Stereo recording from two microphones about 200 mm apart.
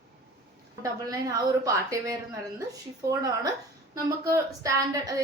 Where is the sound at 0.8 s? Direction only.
15° right (ahead or behind).